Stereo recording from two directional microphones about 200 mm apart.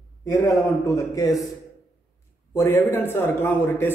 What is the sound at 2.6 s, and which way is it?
A man's voice, 10° left (ahead or behind).